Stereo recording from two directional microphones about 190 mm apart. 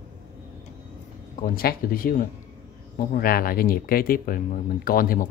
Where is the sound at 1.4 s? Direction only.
50° left (ahead or behind).